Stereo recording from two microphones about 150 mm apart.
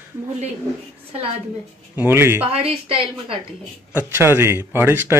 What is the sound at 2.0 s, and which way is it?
Speech, 15° right (ahead or behind).